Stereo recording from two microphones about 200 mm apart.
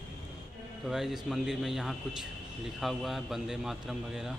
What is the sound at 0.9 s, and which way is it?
A man's voice, centre (ahead or behind).